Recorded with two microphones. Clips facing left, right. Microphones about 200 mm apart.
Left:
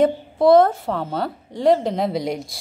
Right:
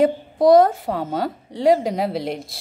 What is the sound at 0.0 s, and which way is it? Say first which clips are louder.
A woman's voice: even; 15° right (ahead or behind).